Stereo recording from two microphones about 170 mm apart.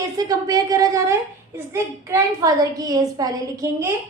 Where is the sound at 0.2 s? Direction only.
20° right (ahead or behind).